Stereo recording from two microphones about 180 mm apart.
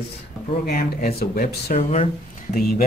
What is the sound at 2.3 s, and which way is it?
Speech, 45° left (ahead or behind).